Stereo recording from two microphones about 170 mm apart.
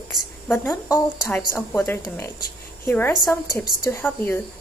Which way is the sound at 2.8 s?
15° left (ahead or behind).